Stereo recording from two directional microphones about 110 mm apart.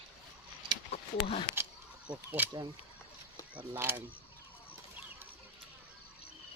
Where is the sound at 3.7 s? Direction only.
20° right (ahead or behind).